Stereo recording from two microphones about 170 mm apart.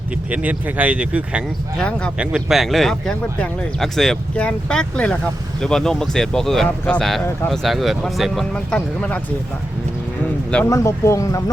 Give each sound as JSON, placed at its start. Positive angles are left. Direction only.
{"t": 0.3, "sound": "speech", "side_deg": -10}
{"t": 1.8, "sound": "speech", "side_deg": 5}
{"t": 2.1, "sound": "speech", "side_deg": -5}
{"t": 10.7, "sound": "speech", "side_deg": 15}